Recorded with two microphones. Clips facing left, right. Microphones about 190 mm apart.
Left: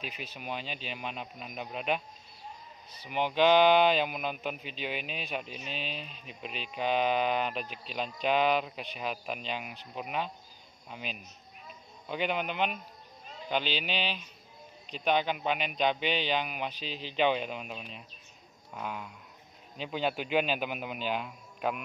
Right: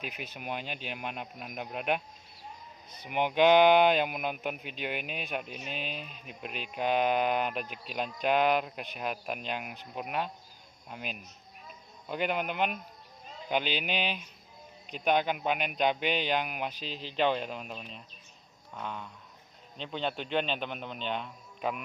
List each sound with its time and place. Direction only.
0.0 s speech: 55° right (ahead or behind)
0.3 s speech: 10° right (ahead or behind)
0.7 s speech: 55° right (ahead or behind)
0.9 s speech: 10° right (ahead or behind)
3.1 s speech: 15° right (ahead or behind)
4.9 s speech: 55° right (ahead or behind)
5.3 s speech: 5° right (ahead or behind)
5.7 s speech: 50° right (ahead or behind)
6.7 s speech: 10° right (ahead or behind)
13.7 s speech: 50° right (ahead or behind)
13.9 s a man's voice: 10° right (ahead or behind)